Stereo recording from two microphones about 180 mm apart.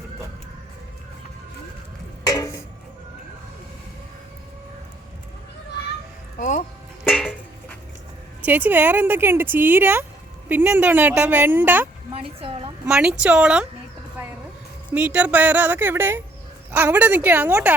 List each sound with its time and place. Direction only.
2.2 s dishes: 20° left (ahead or behind)
6.4 s music: 45° left (ahead or behind)
7.0 s music: centre (ahead or behind)
8.4 s speech: 10° right (ahead or behind)
12.1 s a sound: 30° right (ahead or behind)
12.8 s a woman's voice: 5° right (ahead or behind)
14.9 s speech: 10° right (ahead or behind)